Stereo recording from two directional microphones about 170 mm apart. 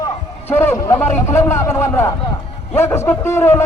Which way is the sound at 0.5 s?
15° left (ahead or behind).